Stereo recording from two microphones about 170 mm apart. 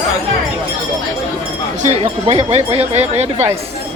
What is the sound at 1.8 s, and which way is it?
Speech, 40° right (ahead or behind).